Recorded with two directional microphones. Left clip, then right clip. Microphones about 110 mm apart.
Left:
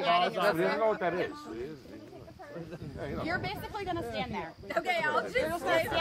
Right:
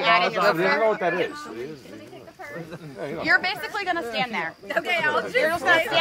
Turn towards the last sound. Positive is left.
turn(degrees=-30)  # may be behind; listen again after turning